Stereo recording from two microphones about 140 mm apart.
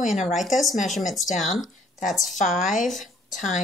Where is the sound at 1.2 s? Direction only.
60° left (ahead or behind).